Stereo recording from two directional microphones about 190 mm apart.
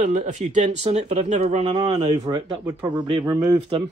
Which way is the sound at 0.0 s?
40° right (ahead or behind).